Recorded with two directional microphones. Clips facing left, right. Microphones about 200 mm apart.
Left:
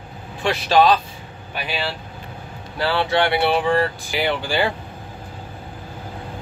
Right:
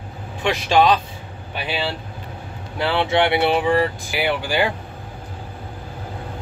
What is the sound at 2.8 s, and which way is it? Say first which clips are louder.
Speech: right 1 dB; 20° right (ahead or behind).